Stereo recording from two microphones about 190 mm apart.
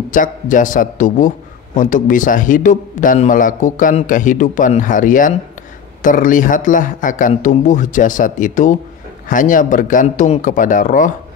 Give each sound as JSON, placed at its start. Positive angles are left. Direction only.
{"t": 0.1, "sound": "a man's voice", "side_deg": 45}